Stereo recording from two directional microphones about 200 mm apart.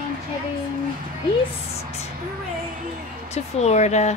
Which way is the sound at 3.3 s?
35° left (ahead or behind).